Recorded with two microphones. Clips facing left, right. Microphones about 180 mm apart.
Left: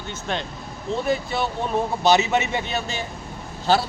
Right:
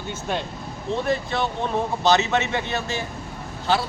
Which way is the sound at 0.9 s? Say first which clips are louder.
Even; 5° left (ahead or behind).